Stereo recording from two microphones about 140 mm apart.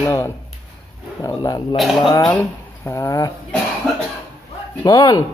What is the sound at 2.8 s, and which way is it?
Speech, 20° left (ahead or behind).